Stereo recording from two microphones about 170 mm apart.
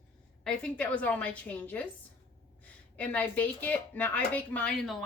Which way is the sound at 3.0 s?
10° left (ahead or behind).